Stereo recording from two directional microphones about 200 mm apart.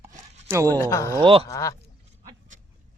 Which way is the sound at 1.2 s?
25° right (ahead or behind).